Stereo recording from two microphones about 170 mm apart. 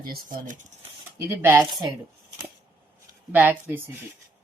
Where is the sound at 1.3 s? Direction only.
15° right (ahead or behind).